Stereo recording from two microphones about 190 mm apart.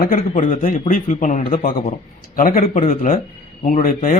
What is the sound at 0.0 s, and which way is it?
A man's voice, 45° left (ahead or behind).